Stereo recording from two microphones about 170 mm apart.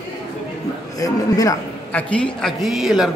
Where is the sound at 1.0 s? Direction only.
20° left (ahead or behind).